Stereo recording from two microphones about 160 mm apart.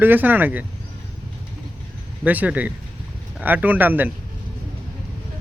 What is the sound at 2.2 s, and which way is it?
Speech, 10° right (ahead or behind).